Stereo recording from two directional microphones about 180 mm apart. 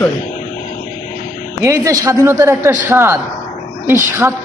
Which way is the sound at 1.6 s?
20° right (ahead or behind).